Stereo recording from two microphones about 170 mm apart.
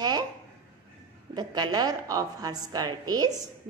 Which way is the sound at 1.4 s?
25° right (ahead or behind).